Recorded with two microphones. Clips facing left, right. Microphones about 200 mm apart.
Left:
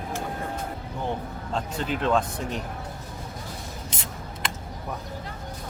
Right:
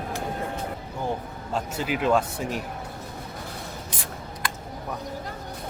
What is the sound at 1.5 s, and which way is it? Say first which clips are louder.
Speech: right 1 dB; 5° right (ahead or behind).